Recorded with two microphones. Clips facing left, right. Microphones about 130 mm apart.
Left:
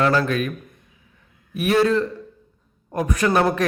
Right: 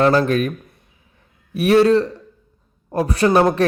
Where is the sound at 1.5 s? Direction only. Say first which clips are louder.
Right 5 dB; 35° right (ahead or behind).